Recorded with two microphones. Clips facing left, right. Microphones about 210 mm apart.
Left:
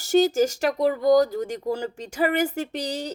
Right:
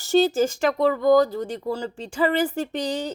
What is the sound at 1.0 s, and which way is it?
A woman's voice, 40° left (ahead or behind).